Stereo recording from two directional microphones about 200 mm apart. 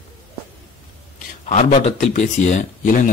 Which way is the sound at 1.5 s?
35° left (ahead or behind).